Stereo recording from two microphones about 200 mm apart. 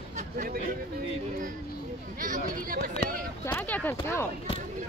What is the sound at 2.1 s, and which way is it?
Chatter, 45° right (ahead or behind).